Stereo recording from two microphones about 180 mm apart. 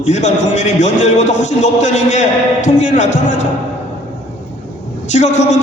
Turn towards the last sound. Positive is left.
turn(degrees=40)  # may be behind; listen again after turning